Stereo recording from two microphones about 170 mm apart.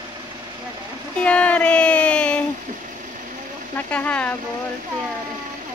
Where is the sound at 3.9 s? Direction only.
10° left (ahead or behind).